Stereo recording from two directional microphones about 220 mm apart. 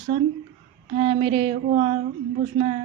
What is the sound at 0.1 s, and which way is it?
Speech, 25° right (ahead or behind).